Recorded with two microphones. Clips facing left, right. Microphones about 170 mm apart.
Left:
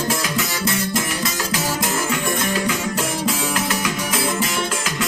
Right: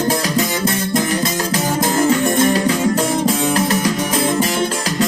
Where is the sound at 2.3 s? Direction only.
35° right (ahead or behind).